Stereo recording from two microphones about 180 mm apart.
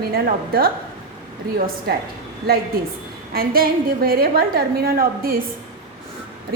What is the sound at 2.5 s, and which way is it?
A woman's voice, 60° right (ahead or behind).